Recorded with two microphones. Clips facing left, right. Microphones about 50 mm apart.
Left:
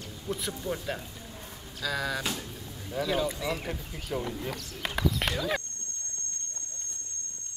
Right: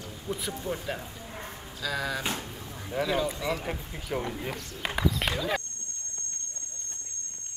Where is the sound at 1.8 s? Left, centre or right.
Centre.